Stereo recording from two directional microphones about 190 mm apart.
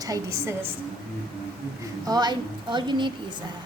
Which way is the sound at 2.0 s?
20° right (ahead or behind).